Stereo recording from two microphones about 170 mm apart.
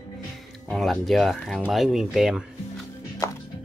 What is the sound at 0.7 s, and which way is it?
Speech, centre (ahead or behind).